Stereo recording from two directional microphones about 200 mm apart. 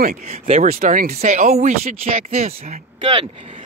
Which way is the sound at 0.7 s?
45° right (ahead or behind).